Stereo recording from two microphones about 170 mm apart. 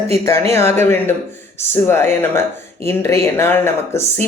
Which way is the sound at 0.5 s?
15° left (ahead or behind).